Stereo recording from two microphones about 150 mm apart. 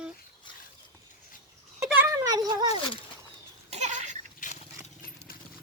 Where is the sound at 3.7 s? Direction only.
50° right (ahead or behind).